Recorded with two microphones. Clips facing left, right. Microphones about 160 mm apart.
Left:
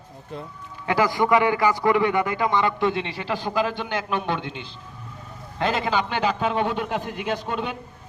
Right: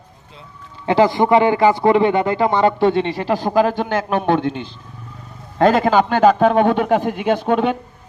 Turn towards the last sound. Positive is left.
turn(degrees=-60)  # may be behind; listen again after turning